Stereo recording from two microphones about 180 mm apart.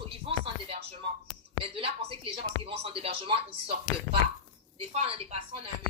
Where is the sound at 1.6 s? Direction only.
30° right (ahead or behind).